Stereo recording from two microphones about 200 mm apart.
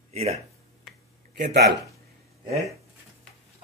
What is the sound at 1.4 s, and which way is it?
Speech, 50° right (ahead or behind).